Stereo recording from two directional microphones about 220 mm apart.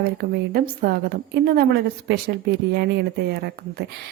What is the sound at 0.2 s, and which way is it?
A woman's voice, 45° right (ahead or behind).